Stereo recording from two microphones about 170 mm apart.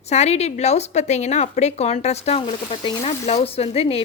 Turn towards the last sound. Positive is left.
turn(degrees=35)  # may be behind; listen again after turning